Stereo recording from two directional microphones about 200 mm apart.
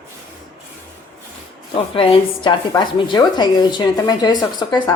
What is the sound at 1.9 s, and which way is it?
A woman's voice, 25° left (ahead or behind).